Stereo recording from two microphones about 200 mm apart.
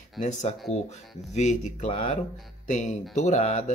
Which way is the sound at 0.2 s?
35° left (ahead or behind).